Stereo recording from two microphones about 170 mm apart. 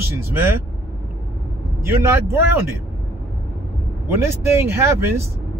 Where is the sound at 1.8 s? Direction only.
15° right (ahead or behind).